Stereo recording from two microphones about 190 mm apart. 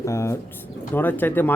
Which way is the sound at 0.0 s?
15° left (ahead or behind).